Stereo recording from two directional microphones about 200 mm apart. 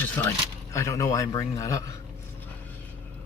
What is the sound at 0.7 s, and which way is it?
Speech, 15° left (ahead or behind).